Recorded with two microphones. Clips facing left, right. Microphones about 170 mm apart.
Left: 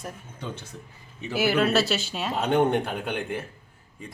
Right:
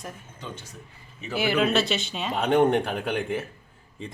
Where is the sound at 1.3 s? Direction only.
5° left (ahead or behind).